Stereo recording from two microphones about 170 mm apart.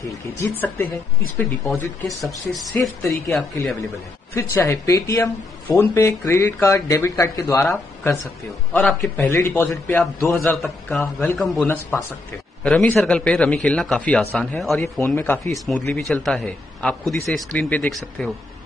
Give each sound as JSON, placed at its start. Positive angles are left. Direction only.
{"t": 0.4, "sound": "speech", "side_deg": 15}
{"t": 2.1, "sound": "speech", "side_deg": 0}
{"t": 4.3, "sound": "speech", "side_deg": 15}
{"t": 11.6, "sound": "speech", "side_deg": 10}
{"t": 14.8, "sound": "speech", "side_deg": 15}